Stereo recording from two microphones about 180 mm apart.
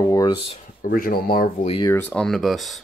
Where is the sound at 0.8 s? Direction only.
55° left (ahead or behind).